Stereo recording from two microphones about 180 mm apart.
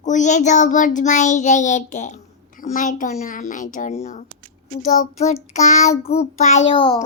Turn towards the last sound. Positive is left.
turn(degrees=25)  # may be behind; listen again after turning